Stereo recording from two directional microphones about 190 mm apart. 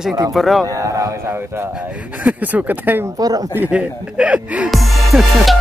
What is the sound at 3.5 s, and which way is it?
Music, 5° right (ahead or behind).